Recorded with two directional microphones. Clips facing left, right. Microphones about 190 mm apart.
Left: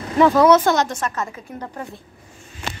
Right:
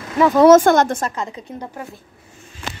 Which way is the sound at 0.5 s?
50° right (ahead or behind).